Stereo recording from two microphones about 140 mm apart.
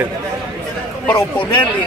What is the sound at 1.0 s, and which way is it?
Speech, 10° left (ahead or behind).